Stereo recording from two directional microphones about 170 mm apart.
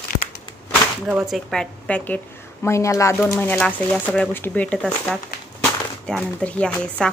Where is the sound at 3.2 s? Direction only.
5° left (ahead or behind).